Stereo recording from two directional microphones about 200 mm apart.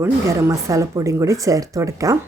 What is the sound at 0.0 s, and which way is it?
Speech, 15° right (ahead or behind).